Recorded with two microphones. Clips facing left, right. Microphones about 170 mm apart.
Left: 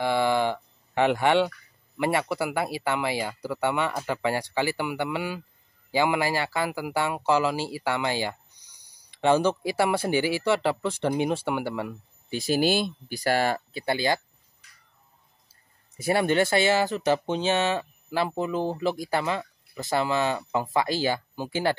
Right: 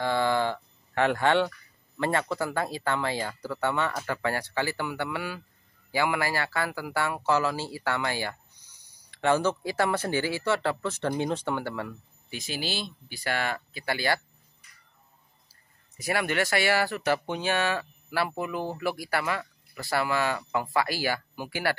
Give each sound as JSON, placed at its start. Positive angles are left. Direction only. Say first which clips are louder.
{"t": 0.0, "sound": "a sound", "louder": "left 2 dB", "side_deg": 15}
{"t": 2.0, "sound": "speech", "louder": "left 2 dB", "side_deg": 10}
{"t": 12.3, "sound": "speech", "louder": "left 10 dB", "side_deg": 35}
{"t": 12.5, "sound": "speech", "louder": "left 10 dB", "side_deg": 50}
{"t": 16.0, "sound": "speech", "louder": "left 5 dB", "side_deg": 30}